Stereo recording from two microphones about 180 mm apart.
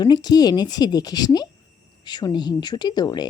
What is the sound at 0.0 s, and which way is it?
Speech, 25° left (ahead or behind).